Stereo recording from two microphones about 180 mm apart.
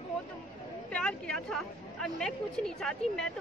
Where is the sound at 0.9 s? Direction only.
5° left (ahead or behind).